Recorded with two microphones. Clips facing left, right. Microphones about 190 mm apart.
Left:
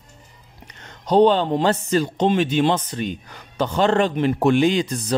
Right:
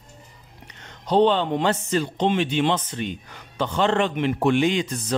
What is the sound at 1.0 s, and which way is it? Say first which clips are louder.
A man's voice: left 3 dB; 40° left (ahead or behind).